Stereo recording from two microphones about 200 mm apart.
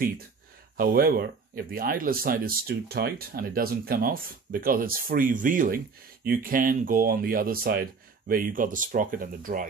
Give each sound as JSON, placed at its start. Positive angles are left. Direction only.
{"t": 0.7, "sound": "speech", "side_deg": -50}